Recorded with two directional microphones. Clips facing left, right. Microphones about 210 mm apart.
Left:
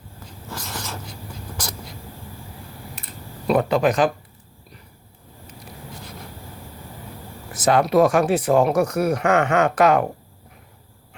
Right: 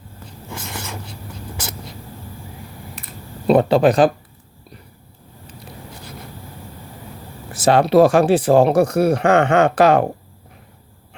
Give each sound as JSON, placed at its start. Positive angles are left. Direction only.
{"t": 3.4, "sound": "speech", "side_deg": -30}
{"t": 7.5, "sound": "speech", "side_deg": -30}